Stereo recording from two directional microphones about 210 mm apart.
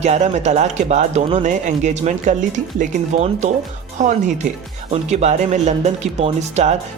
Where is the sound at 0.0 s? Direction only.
35° right (ahead or behind).